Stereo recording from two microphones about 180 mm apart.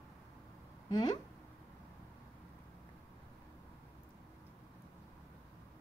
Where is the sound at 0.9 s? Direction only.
20° left (ahead or behind).